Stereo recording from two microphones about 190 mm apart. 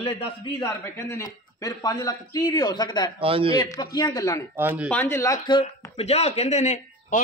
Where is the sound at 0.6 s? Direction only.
15° left (ahead or behind).